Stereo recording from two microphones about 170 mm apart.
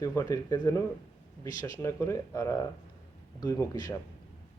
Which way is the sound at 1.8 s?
15° left (ahead or behind).